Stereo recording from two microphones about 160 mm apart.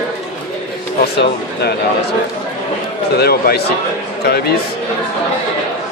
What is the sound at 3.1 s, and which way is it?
Speech, 75° left (ahead or behind).